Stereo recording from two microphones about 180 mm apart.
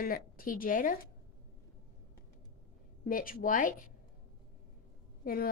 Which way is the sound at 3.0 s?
50° left (ahead or behind).